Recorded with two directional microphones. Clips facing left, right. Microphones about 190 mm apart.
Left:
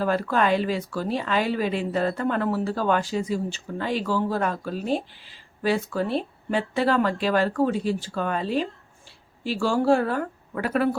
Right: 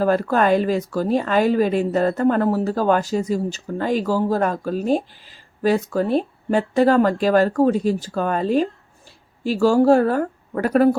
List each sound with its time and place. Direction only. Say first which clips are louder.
0.0 s speech: right 5 dB; 45° right (ahead or behind)